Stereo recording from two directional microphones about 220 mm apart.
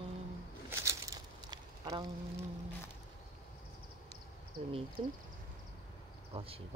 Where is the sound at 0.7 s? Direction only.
15° right (ahead or behind).